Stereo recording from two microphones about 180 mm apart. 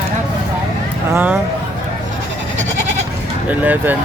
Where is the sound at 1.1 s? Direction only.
10° right (ahead or behind).